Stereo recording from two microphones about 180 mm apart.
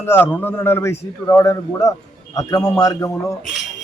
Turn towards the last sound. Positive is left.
turn(degrees=15)  # may be behind; listen again after turning